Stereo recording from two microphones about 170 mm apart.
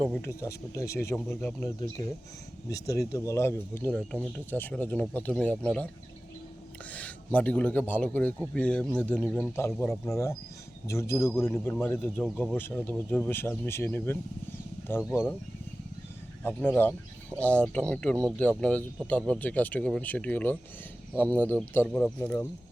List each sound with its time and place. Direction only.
0.0 s speech: 5° left (ahead or behind)
0.3 s speech: 15° left (ahead or behind)
6.9 s a man's voice: 10° left (ahead or behind)
16.4 s speech: 10° left (ahead or behind)